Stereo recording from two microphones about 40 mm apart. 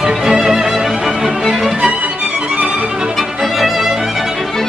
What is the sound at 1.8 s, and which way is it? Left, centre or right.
Music, right.